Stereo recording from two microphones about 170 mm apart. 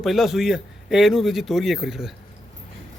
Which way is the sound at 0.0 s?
Centre (ahead or behind).